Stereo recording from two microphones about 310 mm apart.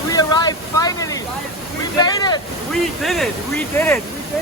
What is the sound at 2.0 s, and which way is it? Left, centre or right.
Speech, centre.